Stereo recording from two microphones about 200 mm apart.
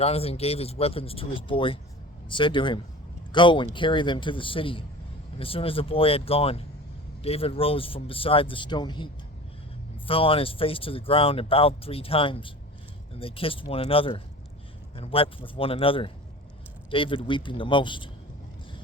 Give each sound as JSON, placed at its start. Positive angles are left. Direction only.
{"t": 0.0, "sound": "speech", "side_deg": 30}
{"t": 10.1, "sound": "speech", "side_deg": 25}